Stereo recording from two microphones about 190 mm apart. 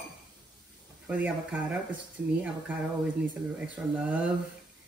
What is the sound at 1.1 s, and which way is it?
Speech, 10° right (ahead or behind).